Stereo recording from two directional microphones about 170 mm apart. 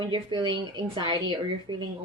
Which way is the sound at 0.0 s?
30° right (ahead or behind).